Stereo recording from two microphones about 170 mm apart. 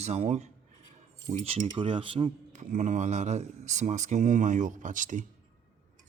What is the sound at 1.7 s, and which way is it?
Speech, 30° right (ahead or behind).